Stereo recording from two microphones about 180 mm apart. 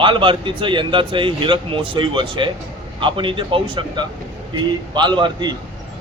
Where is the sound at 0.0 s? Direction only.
30° right (ahead or behind).